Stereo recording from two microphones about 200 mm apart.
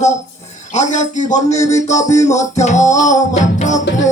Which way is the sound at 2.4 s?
35° left (ahead or behind).